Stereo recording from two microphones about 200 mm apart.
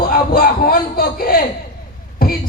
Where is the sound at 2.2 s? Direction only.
45° left (ahead or behind).